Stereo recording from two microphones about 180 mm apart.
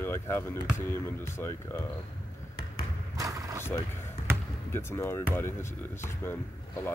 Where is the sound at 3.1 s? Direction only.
20° right (ahead or behind).